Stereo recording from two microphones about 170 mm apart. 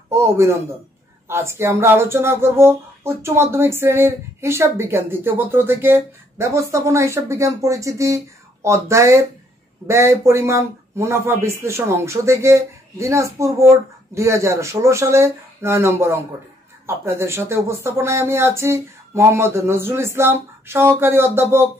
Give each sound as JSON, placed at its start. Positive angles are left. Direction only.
{"t": 0.1, "sound": "speech", "side_deg": -15}